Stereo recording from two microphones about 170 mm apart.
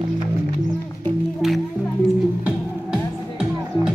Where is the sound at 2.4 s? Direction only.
5° right (ahead or behind).